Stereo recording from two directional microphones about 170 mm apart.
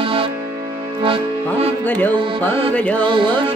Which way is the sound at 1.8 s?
10° left (ahead or behind).